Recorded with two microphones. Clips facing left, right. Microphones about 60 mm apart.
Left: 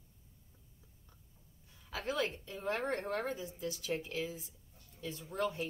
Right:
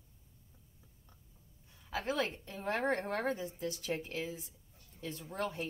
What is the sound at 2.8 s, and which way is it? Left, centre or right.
A woman's voice, right.